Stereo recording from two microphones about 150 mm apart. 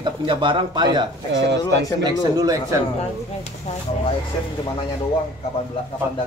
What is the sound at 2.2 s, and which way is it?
Speech, 25° right (ahead or behind).